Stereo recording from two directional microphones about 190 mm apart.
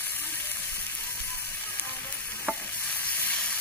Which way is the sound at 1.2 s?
10° left (ahead or behind).